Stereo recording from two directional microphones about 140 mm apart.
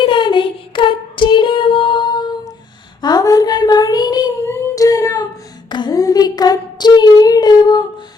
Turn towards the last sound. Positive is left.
turn(degrees=30)  # may be behind; listen again after turning